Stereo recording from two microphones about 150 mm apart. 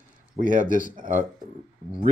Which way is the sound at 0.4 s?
60° right (ahead or behind).